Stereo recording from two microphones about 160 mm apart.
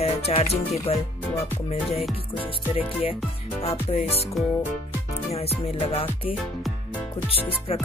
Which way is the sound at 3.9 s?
40° left (ahead or behind).